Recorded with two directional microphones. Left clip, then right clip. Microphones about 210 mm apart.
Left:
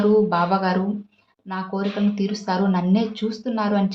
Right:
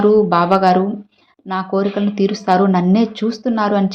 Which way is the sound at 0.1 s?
25° right (ahead or behind).